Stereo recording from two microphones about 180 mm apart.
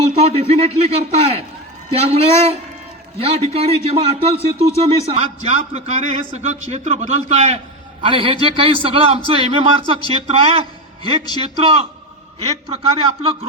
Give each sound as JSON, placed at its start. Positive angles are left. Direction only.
{"t": 0.2, "sound": "a man's voice", "side_deg": -35}